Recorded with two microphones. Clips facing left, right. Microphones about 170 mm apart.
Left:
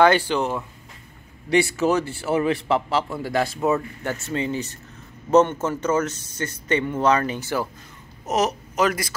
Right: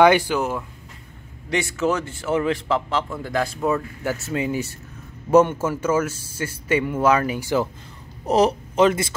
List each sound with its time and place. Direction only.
0.0 s speech: 10° right (ahead or behind)
1.5 s a man's voice: 10° left (ahead or behind)
4.0 s speech: 5° right (ahead or behind)
8.3 s speech: 30° right (ahead or behind)